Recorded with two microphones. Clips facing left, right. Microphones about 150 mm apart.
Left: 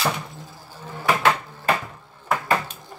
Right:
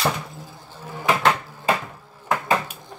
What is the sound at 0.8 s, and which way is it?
Drawer open or close, 15° right (ahead or behind).